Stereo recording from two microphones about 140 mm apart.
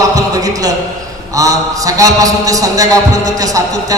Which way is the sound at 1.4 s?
25° right (ahead or behind).